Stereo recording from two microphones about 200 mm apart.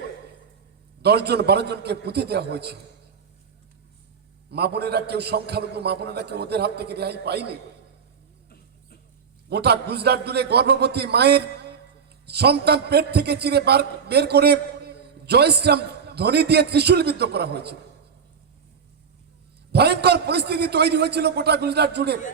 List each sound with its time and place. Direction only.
1.0 s a man's voice: 55° right (ahead or behind)
4.5 s a man's voice: 55° right (ahead or behind)
9.5 s a man's voice: 55° right (ahead or behind)
19.7 s a man's voice: 55° right (ahead or behind)